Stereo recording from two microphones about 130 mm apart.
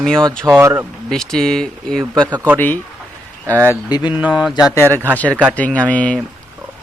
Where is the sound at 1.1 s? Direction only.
5° left (ahead or behind).